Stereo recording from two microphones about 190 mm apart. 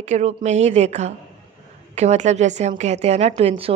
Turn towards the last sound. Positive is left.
turn(degrees=-35)  # may be behind; listen again after turning